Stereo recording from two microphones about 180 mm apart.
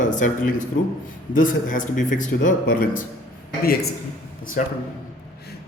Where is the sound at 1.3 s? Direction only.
45° left (ahead or behind).